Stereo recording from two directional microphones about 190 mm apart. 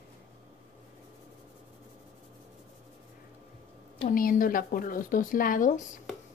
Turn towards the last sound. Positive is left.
turn(degrees=45)  # may be behind; listen again after turning